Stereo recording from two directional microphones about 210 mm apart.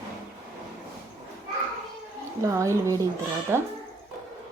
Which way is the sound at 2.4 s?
15° right (ahead or behind).